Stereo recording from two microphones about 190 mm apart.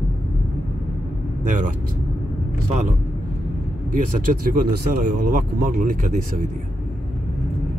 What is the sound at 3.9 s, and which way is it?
Speech, 45° right (ahead or behind).